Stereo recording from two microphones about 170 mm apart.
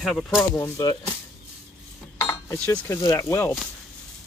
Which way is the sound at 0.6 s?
20° left (ahead or behind).